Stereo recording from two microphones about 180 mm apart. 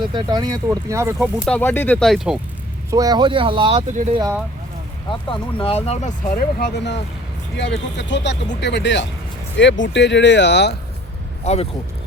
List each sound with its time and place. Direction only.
0.1 s speech: 25° right (ahead or behind)
1.5 s speech: 10° left (ahead or behind)
2.9 s speech: 20° right (ahead or behind)
5.3 s speech: 30° left (ahead or behind); by 7.0 s 70° left (ahead or behind)
7.5 s speech: 85° left
9.6 s speech: 90° left; by 10.8 s 70° left (ahead or behind)
11.4 s speech: 35° left (ahead or behind)